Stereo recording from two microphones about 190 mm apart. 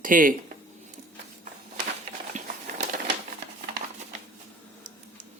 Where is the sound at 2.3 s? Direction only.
40° right (ahead or behind).